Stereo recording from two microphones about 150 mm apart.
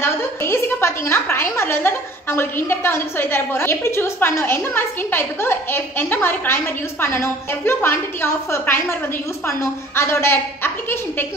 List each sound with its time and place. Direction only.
0.0 s a woman's voice: 15° left (ahead or behind)